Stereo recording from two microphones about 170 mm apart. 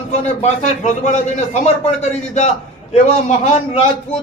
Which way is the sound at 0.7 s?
40° left (ahead or behind).